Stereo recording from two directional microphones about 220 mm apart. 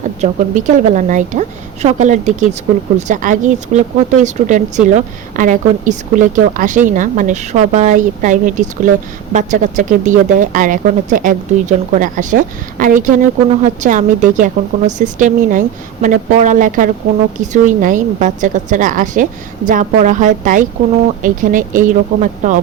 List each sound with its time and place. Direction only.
0.2 s speech: 35° right (ahead or behind)